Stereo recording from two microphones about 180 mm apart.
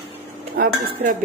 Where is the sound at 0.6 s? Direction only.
55° right (ahead or behind).